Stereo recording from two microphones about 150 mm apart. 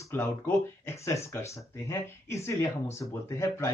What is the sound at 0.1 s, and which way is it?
Speech, 15° left (ahead or behind).